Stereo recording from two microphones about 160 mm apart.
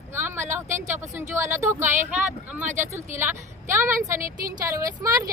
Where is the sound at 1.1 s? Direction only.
15° right (ahead or behind).